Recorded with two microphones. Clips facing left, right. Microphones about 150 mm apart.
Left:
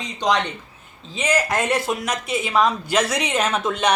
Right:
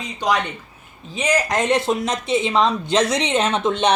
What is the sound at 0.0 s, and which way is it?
Speech, 5° right (ahead or behind).